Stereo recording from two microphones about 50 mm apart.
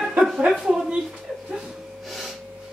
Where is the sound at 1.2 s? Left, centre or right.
Centre.